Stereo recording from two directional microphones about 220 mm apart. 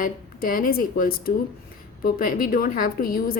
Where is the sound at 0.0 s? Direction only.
40° left (ahead or behind).